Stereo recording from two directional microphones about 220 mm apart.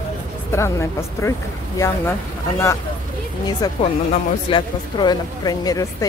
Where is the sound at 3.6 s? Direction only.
15° left (ahead or behind).